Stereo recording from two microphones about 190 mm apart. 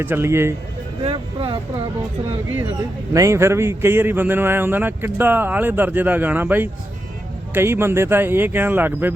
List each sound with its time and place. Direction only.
0.0 s a man's voice: 10° right (ahead or behind)
1.0 s speech: 25° right (ahead or behind)
3.1 s a man's voice: 15° right (ahead or behind)